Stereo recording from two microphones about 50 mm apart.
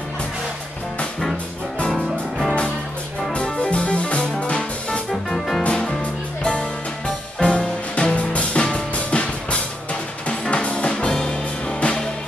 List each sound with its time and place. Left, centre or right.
1.9 s music: centre
3.5 s music: left
7.3 s music: left